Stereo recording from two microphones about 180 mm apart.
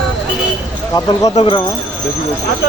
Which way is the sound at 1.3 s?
30° left (ahead or behind).